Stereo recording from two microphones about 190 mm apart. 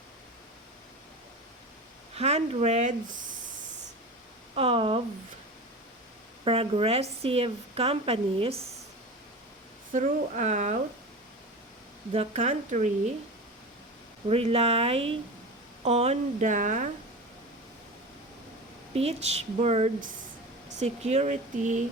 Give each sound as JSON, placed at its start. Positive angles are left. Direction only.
{"t": 2.1, "sound": "a woman's voice", "side_deg": -35}
{"t": 4.5, "sound": "speech", "side_deg": -30}
{"t": 6.4, "sound": "a woman's voice", "side_deg": -30}
{"t": 9.9, "sound": "a woman's voice", "side_deg": -40}
{"t": 12.1, "sound": "a woman's voice", "side_deg": -35}
{"t": 14.3, "sound": "a woman's voice", "side_deg": -30}
{"t": 18.9, "sound": "a woman's voice", "side_deg": -35}